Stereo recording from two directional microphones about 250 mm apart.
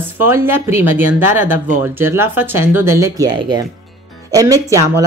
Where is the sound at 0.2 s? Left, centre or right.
Centre.